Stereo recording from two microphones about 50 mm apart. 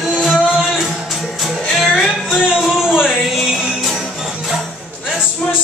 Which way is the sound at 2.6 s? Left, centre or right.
Centre.